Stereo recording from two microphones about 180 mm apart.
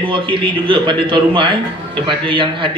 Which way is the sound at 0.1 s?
30° right (ahead or behind).